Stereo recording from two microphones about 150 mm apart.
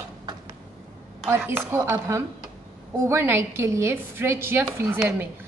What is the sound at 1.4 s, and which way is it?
A woman's voice, 15° right (ahead or behind).